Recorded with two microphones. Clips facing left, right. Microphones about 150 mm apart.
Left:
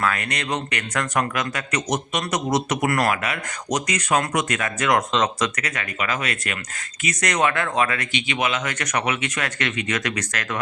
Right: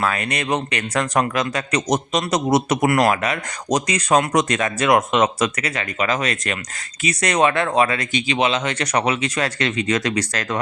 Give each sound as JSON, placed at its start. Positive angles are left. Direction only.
{"t": 0.0, "sound": "speech", "side_deg": -25}
{"t": 3.1, "sound": "speech", "side_deg": -35}